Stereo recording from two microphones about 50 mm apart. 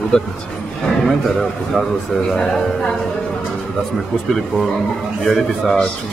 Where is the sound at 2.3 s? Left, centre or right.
Centre.